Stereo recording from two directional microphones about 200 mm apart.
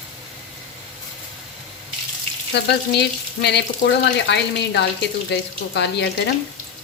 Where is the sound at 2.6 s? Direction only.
60° left (ahead or behind).